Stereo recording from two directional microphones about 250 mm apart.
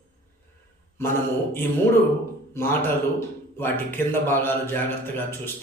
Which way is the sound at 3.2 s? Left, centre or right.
Centre.